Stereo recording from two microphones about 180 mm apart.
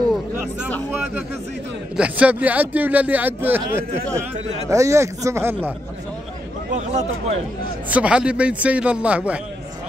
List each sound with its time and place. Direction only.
2.0 s speech: 5° right (ahead or behind)
6.7 s speech: 40° right (ahead or behind)
7.9 s speech: 5° right (ahead or behind)